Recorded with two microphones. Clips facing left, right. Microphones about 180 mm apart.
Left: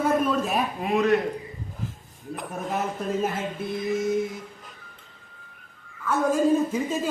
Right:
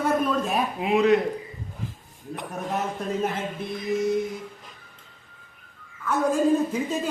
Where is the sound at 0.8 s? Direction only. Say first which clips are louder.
Right 3 dB; 15° right (ahead or behind).